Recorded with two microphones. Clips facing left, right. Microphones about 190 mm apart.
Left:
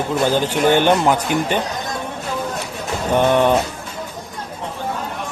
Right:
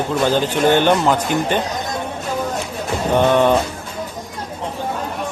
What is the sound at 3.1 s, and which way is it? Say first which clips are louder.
Speech: right 1 dB; 15° left (ahead or behind).